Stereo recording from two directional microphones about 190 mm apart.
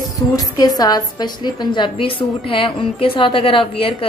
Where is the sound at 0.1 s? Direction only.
20° left (ahead or behind).